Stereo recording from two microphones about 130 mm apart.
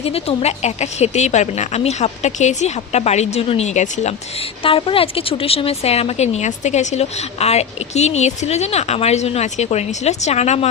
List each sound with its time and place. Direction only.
0.0 s a woman's voice: 50° left (ahead or behind)
4.6 s a woman's voice: 45° left (ahead or behind)